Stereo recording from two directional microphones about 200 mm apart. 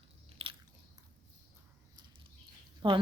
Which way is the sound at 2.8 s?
25° right (ahead or behind).